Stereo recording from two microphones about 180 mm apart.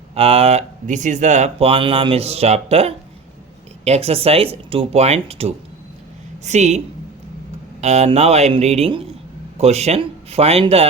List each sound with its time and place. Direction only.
0.1 s speech: 35° right (ahead or behind)